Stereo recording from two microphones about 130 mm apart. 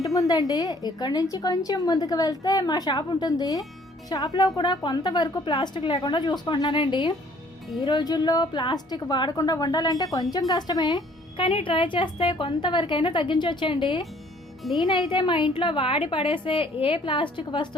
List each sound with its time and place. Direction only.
0.0 s a woman's voice: 25° left (ahead or behind)
14.6 s speech: centre (ahead or behind)
14.8 s speech: 35° left (ahead or behind)